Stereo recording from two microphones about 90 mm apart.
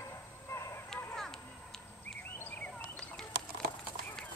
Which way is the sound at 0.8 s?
5° left (ahead or behind).